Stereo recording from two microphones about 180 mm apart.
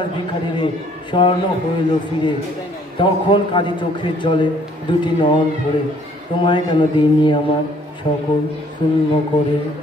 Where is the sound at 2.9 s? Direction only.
25° left (ahead or behind).